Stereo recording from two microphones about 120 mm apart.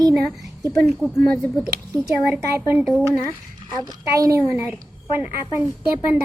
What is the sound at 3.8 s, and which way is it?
A woman's voice, 30° right (ahead or behind).